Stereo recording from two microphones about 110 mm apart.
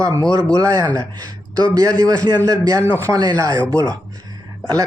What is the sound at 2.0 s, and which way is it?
Speech, 35° right (ahead or behind).